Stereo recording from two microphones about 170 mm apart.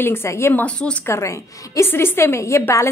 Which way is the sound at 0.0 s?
15° left (ahead or behind).